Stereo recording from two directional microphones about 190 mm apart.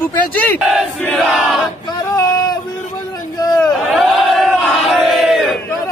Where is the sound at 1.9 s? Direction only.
20° left (ahead or behind).